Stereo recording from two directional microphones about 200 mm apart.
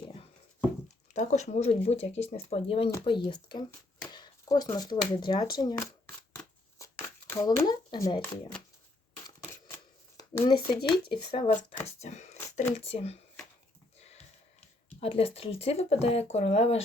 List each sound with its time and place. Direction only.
1.1 s speech: 35° left (ahead or behind); by 5.9 s 15° left (ahead or behind)
6.3 s shuffling cards: 15° left (ahead or behind)
9.7 s shuffling cards: 15° left (ahead or behind)
11.1 s speech: 25° left (ahead or behind)
11.9 s a sound: 35° left (ahead or behind)
12.7 s speech: 30° left (ahead or behind)
15.0 s speech: 30° left (ahead or behind)